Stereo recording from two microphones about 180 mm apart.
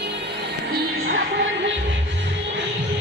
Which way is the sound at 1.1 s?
70° right (ahead or behind).